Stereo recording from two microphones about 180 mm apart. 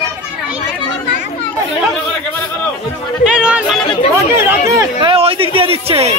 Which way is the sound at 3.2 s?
5° right (ahead or behind).